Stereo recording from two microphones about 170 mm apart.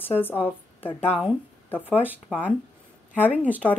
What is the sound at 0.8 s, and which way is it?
Speech, 35° left (ahead or behind).